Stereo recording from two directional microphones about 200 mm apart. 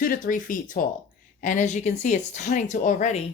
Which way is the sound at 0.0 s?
45° left (ahead or behind).